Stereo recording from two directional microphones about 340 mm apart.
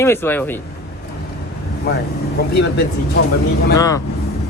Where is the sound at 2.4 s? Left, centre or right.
Left.